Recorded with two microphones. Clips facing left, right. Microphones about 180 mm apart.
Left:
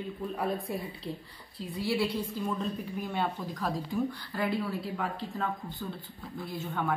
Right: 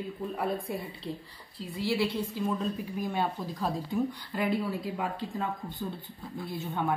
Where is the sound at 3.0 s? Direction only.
15° right (ahead or behind).